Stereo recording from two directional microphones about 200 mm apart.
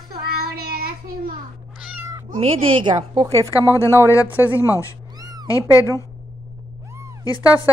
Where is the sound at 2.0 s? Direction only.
15° right (ahead or behind).